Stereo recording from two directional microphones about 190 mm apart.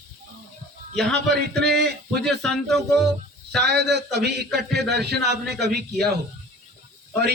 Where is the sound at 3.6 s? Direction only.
60° right (ahead or behind).